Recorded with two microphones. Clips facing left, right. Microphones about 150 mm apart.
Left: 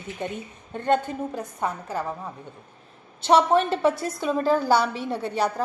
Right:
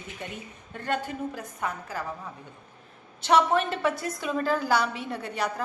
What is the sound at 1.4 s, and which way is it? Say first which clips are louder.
Speech: left 4 dB; 30° left (ahead or behind).